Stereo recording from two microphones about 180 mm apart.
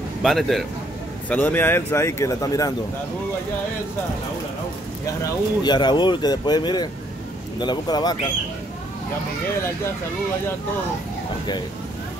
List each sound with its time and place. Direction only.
0.2 s a man's voice: centre (ahead or behind); by 2.7 s 20° left (ahead or behind)
5.6 s speech: 25° left (ahead or behind)